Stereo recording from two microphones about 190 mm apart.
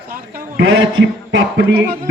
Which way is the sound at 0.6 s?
80° right.